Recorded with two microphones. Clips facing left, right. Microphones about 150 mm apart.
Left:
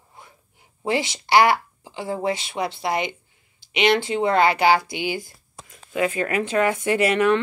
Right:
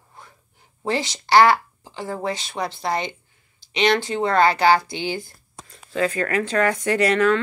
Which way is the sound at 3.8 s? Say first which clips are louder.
Left 1 dB; 20° left (ahead or behind).